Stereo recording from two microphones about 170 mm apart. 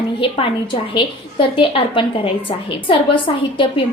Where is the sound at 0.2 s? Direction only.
30° left (ahead or behind).